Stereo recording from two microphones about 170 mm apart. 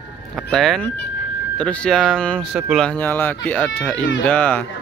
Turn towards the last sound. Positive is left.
turn(degrees=10)  # may be behind; listen again after turning